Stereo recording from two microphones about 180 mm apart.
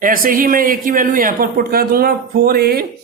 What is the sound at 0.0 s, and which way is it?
Speech, 50° right (ahead or behind).